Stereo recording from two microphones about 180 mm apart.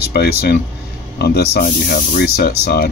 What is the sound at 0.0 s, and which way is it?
Speech, 60° left (ahead or behind).